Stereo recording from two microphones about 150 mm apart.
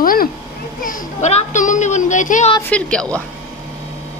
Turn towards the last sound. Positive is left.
turn(degrees=5)  # may be behind; listen again after turning